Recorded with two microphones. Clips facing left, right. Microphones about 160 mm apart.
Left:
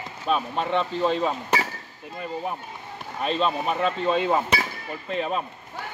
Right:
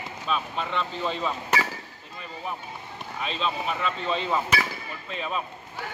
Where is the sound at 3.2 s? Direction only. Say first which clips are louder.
Left 5 dB; 45° left (ahead or behind).